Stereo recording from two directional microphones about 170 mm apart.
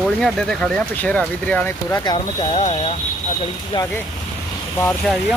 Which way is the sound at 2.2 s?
35° left (ahead or behind).